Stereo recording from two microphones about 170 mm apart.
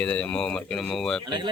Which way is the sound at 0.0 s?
5° left (ahead or behind).